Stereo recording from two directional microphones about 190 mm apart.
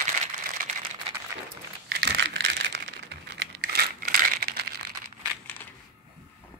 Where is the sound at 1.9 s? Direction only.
60° right (ahead or behind).